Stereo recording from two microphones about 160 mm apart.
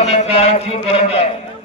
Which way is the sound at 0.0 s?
45° left (ahead or behind).